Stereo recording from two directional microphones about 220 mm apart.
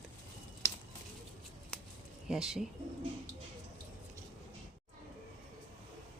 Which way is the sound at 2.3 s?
Centre (ahead or behind).